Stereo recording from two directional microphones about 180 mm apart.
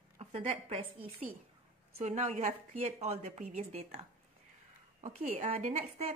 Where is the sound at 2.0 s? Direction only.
40° right (ahead or behind).